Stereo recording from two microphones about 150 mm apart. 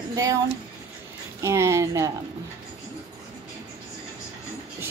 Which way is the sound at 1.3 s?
20° right (ahead or behind).